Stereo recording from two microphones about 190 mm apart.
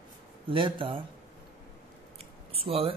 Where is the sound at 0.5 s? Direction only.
25° right (ahead or behind).